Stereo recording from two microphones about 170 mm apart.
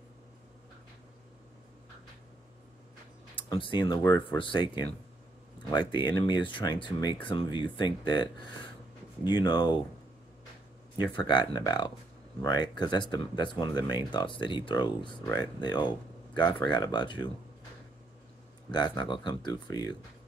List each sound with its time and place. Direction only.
3.3 s speech: 30° left (ahead or behind)
11.0 s speech: 25° left (ahead or behind)
18.7 s speech: 25° left (ahead or behind)